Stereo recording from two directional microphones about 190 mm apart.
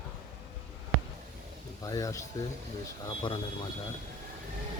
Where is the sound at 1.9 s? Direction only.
20° left (ahead or behind).